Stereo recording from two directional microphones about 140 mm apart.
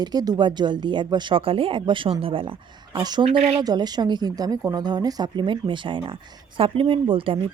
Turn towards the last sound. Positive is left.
turn(degrees=-40)  # may be behind; listen again after turning